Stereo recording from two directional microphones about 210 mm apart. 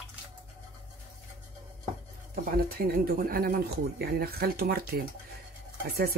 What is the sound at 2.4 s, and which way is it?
Speech, 45° right (ahead or behind).